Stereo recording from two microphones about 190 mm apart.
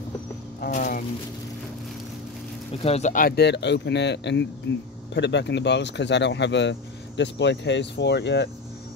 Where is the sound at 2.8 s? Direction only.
35° left (ahead or behind).